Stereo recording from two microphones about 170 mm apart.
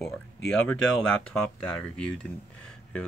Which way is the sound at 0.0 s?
5° left (ahead or behind).